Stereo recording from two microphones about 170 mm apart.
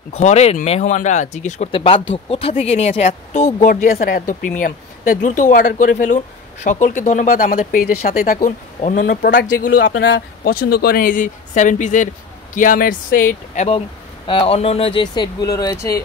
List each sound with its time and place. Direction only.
0.1 s speech: 40° left (ahead or behind); by 9.8 s 60° left (ahead or behind)
9.8 s speech: 90° left; by 13.7 s 55° left (ahead or behind)
13.7 s speech: 35° left (ahead or behind)